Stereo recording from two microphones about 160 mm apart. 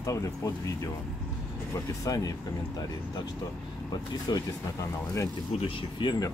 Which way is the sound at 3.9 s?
25° left (ahead or behind).